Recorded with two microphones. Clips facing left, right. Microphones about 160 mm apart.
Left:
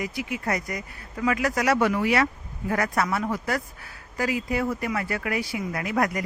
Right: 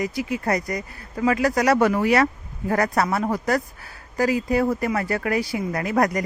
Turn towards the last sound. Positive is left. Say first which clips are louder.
# right 4 dB
turn(degrees=-40)  # may be behind; listen again after turning